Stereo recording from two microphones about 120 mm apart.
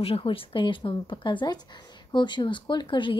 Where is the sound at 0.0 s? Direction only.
50° left (ahead or behind).